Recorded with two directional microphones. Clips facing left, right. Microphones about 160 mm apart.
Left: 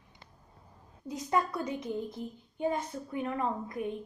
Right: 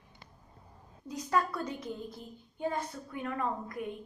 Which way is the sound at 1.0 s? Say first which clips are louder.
Left 1 dB; 20° left (ahead or behind).